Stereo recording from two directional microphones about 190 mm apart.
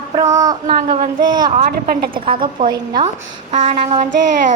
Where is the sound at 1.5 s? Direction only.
50° right (ahead or behind).